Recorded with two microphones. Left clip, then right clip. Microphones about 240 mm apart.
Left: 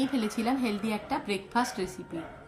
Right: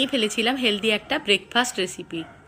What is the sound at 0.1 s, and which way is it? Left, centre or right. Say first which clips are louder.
Speech: right 8 dB; right.